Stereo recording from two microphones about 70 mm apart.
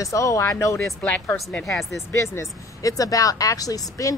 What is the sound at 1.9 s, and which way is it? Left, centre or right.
Speech, left.